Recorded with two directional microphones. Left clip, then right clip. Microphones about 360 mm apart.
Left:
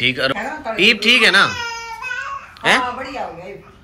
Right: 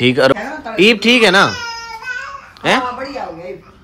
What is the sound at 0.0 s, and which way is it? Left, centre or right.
Speech, centre.